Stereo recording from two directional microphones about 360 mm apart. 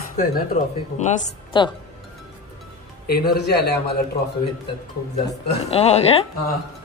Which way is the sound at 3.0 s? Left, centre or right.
Left.